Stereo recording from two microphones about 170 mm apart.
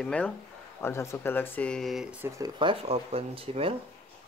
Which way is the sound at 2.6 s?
35° right (ahead or behind).